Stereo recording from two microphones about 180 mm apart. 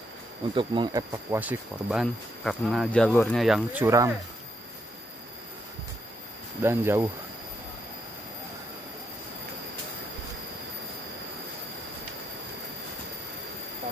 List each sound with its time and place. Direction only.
0.6 s speech: 25° right (ahead or behind)
1.4 s speech: 5° right (ahead or behind)
6.6 s speech: 15° right (ahead or behind)